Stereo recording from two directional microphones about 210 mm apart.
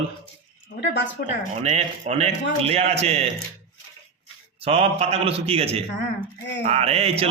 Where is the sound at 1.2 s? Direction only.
50° left (ahead or behind).